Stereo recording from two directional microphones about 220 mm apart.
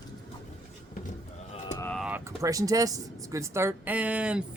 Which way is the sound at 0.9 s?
35° left (ahead or behind).